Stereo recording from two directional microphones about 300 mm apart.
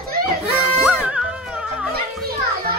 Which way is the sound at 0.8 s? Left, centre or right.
Centre.